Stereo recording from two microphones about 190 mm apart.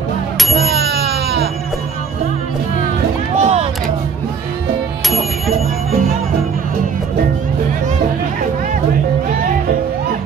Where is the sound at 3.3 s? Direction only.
35° right (ahead or behind).